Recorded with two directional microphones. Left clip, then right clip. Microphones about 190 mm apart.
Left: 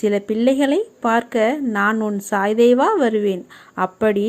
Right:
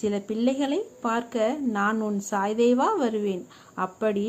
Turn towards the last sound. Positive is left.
turn(degrees=25)  # may be behind; listen again after turning